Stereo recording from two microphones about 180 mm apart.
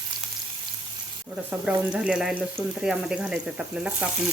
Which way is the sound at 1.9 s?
5° right (ahead or behind).